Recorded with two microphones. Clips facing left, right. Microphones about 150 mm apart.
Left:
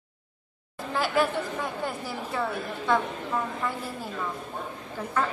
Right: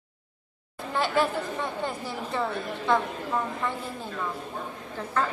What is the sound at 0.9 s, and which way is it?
A woman's voice, centre (ahead or behind).